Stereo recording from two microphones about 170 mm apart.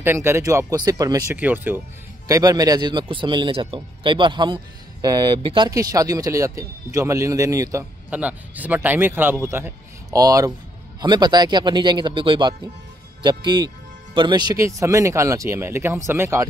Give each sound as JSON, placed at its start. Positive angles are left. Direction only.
{"t": 0.0, "sound": "a man's voice", "side_deg": -15}
{"t": 8.1, "sound": "a man's voice", "side_deg": -10}